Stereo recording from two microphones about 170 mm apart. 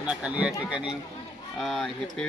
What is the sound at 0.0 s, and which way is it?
Speech, 5° right (ahead or behind).